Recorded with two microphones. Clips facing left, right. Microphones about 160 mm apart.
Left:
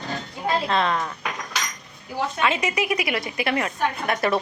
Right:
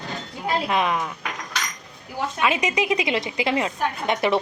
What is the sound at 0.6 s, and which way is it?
Speech, 15° right (ahead or behind).